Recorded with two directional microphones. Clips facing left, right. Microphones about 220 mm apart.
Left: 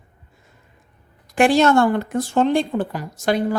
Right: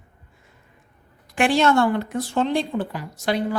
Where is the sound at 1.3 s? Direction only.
40° left (ahead or behind).